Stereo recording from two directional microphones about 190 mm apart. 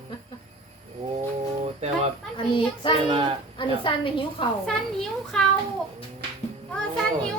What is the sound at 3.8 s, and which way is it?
Speech, 25° left (ahead or behind).